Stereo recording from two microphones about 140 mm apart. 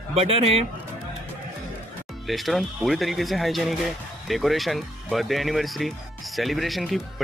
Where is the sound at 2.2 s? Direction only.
Centre (ahead or behind).